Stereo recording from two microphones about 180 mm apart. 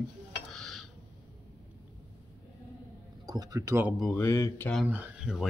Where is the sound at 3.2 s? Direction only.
20° right (ahead or behind).